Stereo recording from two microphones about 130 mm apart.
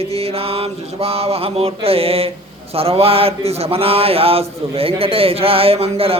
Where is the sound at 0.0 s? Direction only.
50° right (ahead or behind).